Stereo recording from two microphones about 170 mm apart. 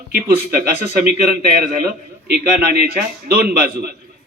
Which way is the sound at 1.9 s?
65° right (ahead or behind).